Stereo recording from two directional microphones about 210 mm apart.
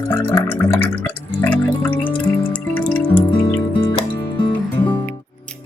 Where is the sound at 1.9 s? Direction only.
25° left (ahead or behind).